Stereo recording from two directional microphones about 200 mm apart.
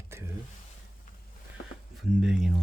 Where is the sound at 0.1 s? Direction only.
15° right (ahead or behind).